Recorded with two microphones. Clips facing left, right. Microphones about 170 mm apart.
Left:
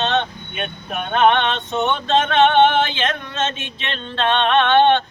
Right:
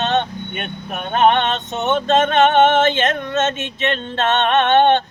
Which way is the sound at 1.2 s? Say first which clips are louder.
Right 1 dB; 40° right (ahead or behind).